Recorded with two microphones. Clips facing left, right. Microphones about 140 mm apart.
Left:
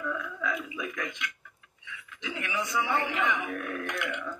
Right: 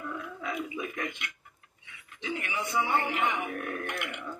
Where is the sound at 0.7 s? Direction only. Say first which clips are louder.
Even; 35° right (ahead or behind).